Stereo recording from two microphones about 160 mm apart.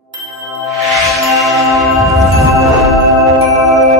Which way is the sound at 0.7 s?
Centre (ahead or behind).